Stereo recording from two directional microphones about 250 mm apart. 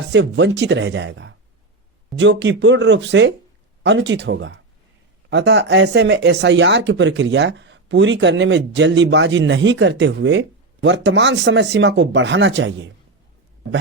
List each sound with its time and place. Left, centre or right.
0.1 s speech: right